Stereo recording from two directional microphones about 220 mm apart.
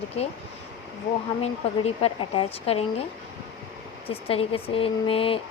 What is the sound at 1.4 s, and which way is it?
Speech, 25° left (ahead or behind).